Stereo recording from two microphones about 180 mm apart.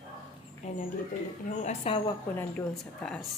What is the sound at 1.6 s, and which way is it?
Speech, 30° left (ahead or behind).